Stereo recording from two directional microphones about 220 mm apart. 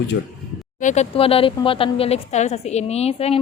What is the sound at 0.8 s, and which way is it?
Speech, 30° left (ahead or behind).